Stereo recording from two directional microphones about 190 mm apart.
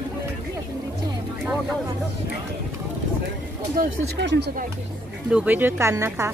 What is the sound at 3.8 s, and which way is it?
Speech, 65° right (ahead or behind).